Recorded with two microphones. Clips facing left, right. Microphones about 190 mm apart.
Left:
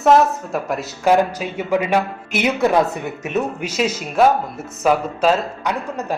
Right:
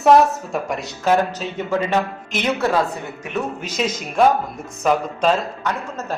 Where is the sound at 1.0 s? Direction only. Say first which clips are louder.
Left 2 dB; 10° left (ahead or behind).